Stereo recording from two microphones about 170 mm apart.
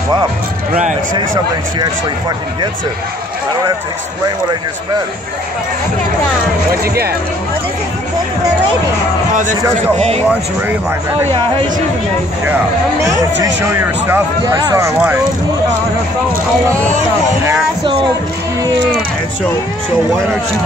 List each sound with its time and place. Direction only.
1.8 s speech: 25° right (ahead or behind)
6.7 s speech: 65° right (ahead or behind)
9.3 s speech: 50° right (ahead or behind)
9.9 s speech: 35° right (ahead or behind)
10.2 s speech: 10° right (ahead or behind)
13.4 s speech: 15° right (ahead or behind)
14.4 s speech: 25° right (ahead or behind)